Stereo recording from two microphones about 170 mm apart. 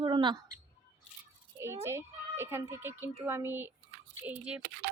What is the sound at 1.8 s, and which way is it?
Speech, 15° right (ahead or behind).